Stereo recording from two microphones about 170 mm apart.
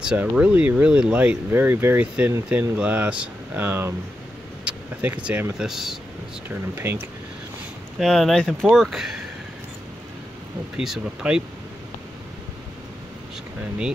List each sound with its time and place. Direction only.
0.0 s speech: 5° right (ahead or behind)
6.7 s speech: 15° right (ahead or behind)
8.0 s speech: centre (ahead or behind)
10.8 s speech: 5° right (ahead or behind)